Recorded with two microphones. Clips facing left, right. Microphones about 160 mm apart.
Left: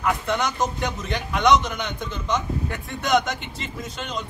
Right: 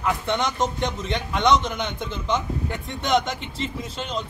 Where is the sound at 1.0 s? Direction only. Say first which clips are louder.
Left 1 dB; centre (ahead or behind).